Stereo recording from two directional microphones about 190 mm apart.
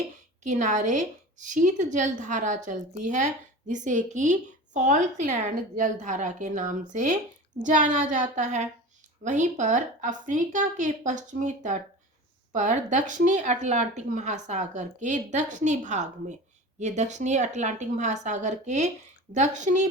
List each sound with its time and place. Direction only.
0.4 s a woman's voice: 40° right (ahead or behind)